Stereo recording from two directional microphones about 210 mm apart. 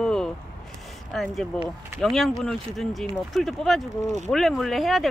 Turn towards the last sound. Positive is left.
turn(degrees=0)  # may be behind; listen again after turning